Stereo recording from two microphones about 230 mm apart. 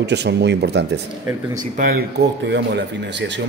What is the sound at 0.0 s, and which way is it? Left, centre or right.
Speech, right.